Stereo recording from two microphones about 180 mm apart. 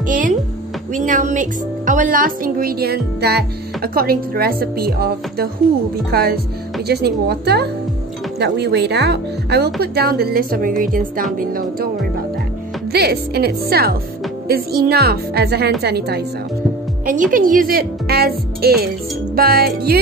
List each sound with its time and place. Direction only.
0.0 s speech: 50° right (ahead or behind)
12.9 s speech: 60° right (ahead or behind)
17.0 s speech: 45° right (ahead or behind)